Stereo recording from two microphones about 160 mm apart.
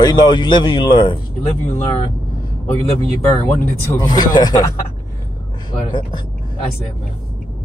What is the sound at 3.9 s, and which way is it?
Speech, 25° left (ahead or behind).